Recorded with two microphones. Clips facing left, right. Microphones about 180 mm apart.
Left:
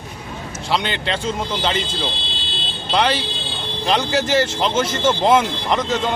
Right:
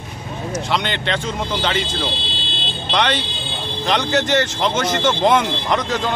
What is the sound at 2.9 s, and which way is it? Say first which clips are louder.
Speech: left 1 dB; 10° left (ahead or behind).